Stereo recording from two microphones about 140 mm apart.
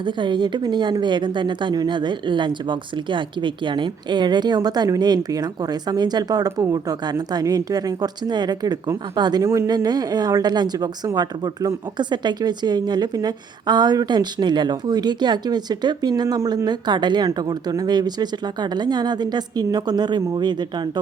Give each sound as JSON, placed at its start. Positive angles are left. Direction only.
{"t": 0.0, "sound": "speech", "side_deg": -35}